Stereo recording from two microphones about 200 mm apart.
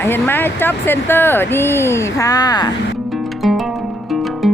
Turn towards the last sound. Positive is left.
turn(degrees=0)  # may be behind; listen again after turning